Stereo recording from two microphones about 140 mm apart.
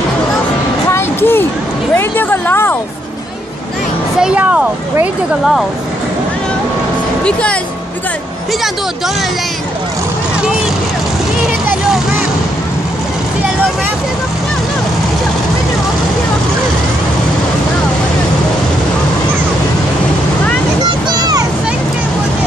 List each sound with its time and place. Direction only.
0.8 s a sound: 15° left (ahead or behind)
4.2 s speech: 5° right (ahead or behind)
21.1 s vehicle: 30° right (ahead or behind)